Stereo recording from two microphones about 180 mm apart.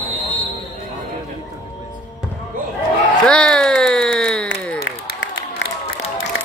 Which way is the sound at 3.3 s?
5° left (ahead or behind).